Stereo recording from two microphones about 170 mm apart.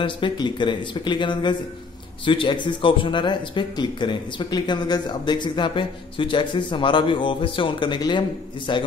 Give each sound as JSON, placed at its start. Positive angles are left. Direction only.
{"t": 0.0, "sound": "speech", "side_deg": 30}